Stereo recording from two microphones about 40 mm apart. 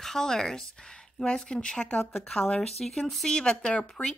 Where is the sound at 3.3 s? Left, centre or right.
Left.